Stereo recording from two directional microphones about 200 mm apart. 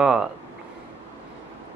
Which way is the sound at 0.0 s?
5° right (ahead or behind).